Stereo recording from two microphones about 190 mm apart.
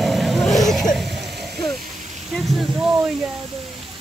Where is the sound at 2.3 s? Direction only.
5° right (ahead or behind).